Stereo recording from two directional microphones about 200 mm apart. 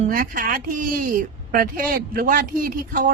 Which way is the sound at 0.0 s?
45° right (ahead or behind).